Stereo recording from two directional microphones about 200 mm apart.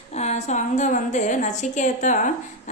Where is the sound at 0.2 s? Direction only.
35° left (ahead or behind).